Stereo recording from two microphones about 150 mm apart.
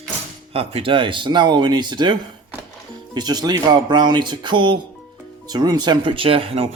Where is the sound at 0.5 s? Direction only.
40° right (ahead or behind).